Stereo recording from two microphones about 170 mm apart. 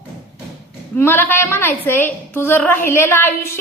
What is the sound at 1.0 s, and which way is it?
A woman's voice, 10° left (ahead or behind).